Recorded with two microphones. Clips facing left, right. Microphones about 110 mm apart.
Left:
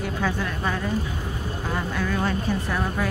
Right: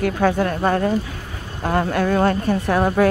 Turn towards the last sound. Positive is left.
turn(degrees=-60)  # may be behind; listen again after turning